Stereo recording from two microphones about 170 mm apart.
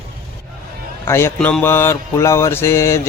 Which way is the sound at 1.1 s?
15° left (ahead or behind).